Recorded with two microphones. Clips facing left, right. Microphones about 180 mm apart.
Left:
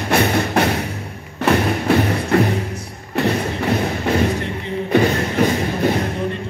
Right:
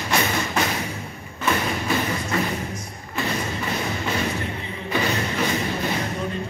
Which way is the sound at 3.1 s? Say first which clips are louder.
Left 7 dB; 60° left (ahead or behind).